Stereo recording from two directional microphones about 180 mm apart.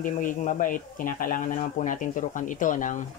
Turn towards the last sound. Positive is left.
turn(degrees=45)  # may be behind; listen again after turning